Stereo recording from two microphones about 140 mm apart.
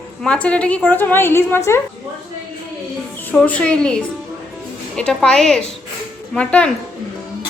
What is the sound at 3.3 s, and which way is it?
A woman's voice, 10° left (ahead or behind).